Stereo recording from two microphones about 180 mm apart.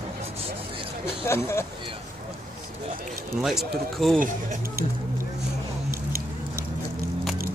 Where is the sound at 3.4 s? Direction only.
Centre (ahead or behind).